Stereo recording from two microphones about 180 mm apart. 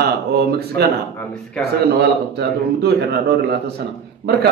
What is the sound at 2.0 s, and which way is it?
Speech, 65° right (ahead or behind).